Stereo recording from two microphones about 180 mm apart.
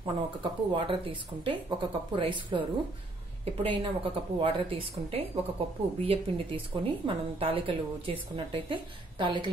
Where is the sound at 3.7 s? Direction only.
30° right (ahead or behind).